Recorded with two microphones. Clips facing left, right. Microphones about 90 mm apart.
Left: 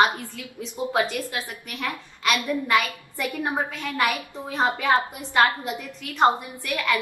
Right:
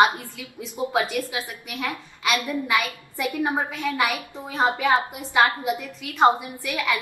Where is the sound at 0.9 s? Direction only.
10° right (ahead or behind).